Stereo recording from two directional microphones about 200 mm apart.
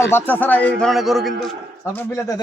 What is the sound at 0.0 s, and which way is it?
A man's voice, 10° left (ahead or behind).